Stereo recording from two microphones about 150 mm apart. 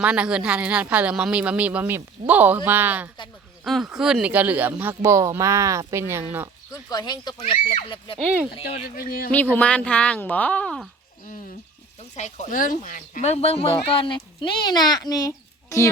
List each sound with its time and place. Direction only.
0.0 s speech: 10° right (ahead or behind)
6.9 s speech: 30° left (ahead or behind)
9.0 s a man's voice: 75° left (ahead or behind)
9.3 s speech: 10° left (ahead or behind)
12.1 s speech: 55° left (ahead or behind); by 15.9 s 20° left (ahead or behind)